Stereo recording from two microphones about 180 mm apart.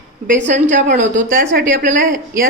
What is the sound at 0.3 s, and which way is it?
A woman's voice, 40° right (ahead or behind).